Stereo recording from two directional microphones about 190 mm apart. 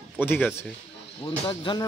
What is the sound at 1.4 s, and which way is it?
Speech, 25° left (ahead or behind).